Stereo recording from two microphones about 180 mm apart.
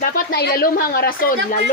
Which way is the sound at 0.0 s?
60° left (ahead or behind).